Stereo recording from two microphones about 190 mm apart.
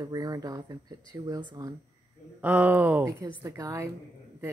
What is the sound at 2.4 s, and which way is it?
Speech, 10° right (ahead or behind).